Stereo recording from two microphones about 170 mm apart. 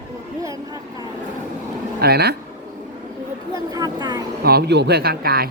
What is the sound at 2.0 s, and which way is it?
Speech, 70° right (ahead or behind).